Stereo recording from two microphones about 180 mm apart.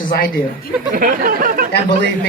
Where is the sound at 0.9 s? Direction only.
50° right (ahead or behind).